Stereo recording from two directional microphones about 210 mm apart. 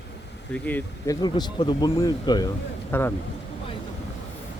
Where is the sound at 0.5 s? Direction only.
10° left (ahead or behind).